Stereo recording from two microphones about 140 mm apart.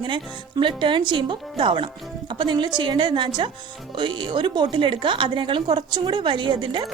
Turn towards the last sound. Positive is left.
turn(degrees=-35)  # may be behind; listen again after turning